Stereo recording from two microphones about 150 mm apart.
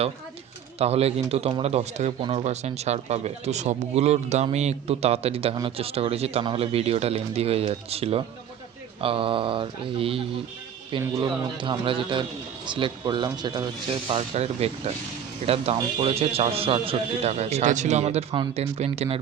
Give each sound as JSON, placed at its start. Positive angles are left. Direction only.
{"t": 0.8, "sound": "speech", "side_deg": -45}
{"t": 14.3, "sound": "speech", "side_deg": -45}